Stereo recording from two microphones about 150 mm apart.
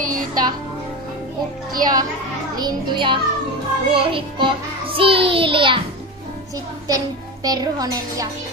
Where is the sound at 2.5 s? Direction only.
30° right (ahead or behind).